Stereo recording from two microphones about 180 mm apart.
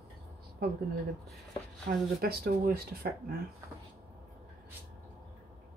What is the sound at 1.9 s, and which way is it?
Speech, 60° right (ahead or behind).